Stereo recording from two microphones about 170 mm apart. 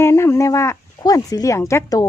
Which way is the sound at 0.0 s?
15° left (ahead or behind).